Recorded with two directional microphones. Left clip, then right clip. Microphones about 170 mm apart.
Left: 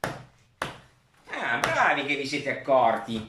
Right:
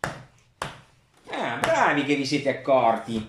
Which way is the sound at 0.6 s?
Centre (ahead or behind).